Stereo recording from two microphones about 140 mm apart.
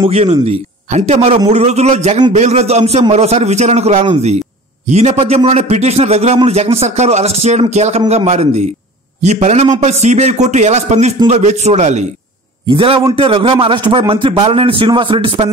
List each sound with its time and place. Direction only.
0.0 s a man's voice: 45° right (ahead or behind)
12.6 s a man's voice: 40° right (ahead or behind)